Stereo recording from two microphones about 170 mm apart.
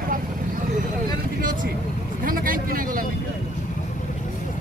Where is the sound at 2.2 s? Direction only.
55° right (ahead or behind).